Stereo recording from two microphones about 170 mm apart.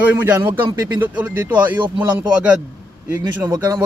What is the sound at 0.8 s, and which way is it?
Speech, 20° right (ahead or behind).